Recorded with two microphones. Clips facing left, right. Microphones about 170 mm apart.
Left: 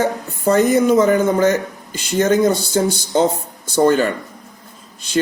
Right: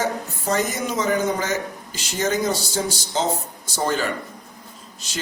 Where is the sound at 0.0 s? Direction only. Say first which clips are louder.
Left 7 dB; 55° left (ahead or behind).